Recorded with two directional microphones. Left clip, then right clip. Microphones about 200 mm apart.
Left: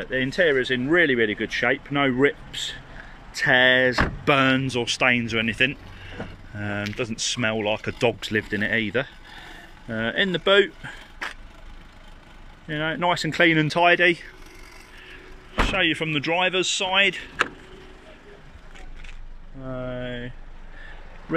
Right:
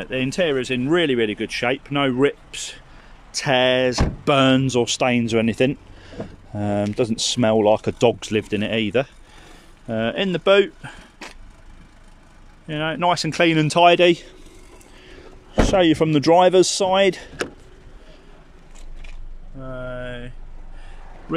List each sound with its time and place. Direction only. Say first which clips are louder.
0.0 s speech: even; 5° right (ahead or behind)
12.6 s speech: right 3 dB; 5° right (ahead or behind)
15.6 s speech: right 6 dB; 30° right (ahead or behind)
19.6 s a sound: right 1 dB; centre (ahead or behind)